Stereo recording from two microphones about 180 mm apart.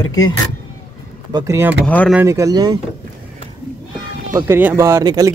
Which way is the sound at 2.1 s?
15° right (ahead or behind).